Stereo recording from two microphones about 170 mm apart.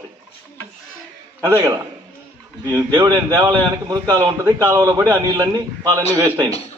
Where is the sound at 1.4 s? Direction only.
20° right (ahead or behind).